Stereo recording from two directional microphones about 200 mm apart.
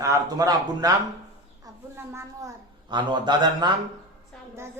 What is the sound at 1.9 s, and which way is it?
A man's voice, 15° right (ahead or behind).